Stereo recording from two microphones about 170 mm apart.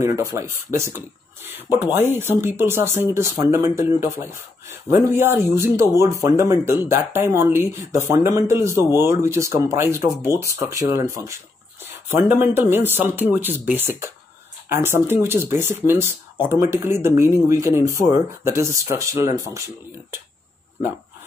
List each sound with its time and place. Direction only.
0.0 s speech: 20° right (ahead or behind)
11.8 s a sound: 10° right (ahead or behind)
12.3 s speech: 15° right (ahead or behind)